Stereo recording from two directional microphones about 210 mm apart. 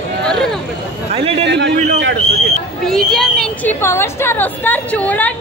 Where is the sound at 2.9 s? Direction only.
Centre (ahead or behind).